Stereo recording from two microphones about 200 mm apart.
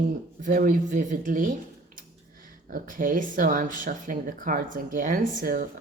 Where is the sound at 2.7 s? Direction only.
40° right (ahead or behind).